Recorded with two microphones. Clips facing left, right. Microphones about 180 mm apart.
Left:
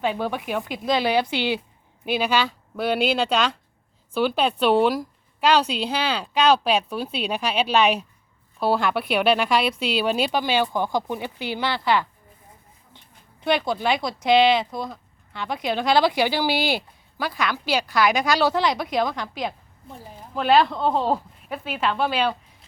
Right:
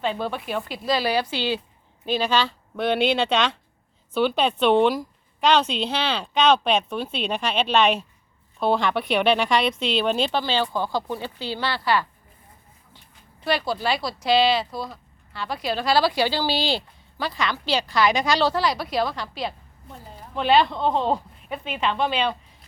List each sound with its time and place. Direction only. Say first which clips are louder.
0.0 s a woman's voice: left 2 dB; 10° left (ahead or behind)
13.4 s a woman's voice: left 2 dB; 20° left (ahead or behind)
18.5 s speech: left 1 dB; 20° left (ahead or behind)
20.3 s a woman's voice: left 1 dB; centre (ahead or behind)